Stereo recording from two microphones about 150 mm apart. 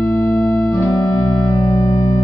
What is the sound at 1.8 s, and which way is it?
Music, 20° left (ahead or behind).